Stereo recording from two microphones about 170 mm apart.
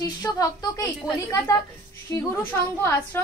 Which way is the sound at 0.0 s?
20° left (ahead or behind).